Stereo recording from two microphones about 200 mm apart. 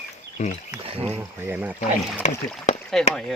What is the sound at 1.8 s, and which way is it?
Speech, 35° left (ahead or behind).